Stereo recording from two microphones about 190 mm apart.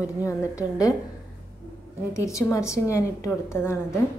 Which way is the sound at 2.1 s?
15° left (ahead or behind).